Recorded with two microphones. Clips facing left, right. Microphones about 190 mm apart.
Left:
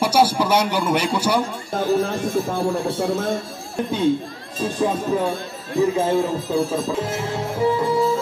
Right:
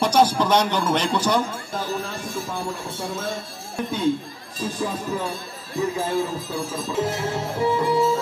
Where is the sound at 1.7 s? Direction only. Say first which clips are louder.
Left 10 dB; 55° left (ahead or behind).